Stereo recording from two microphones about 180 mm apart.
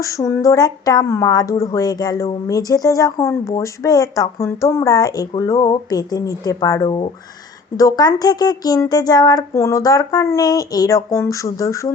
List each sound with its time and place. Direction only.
0.0 s speech: 15° left (ahead or behind)